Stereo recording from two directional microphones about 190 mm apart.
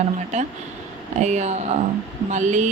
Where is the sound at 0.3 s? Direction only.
40° right (ahead or behind).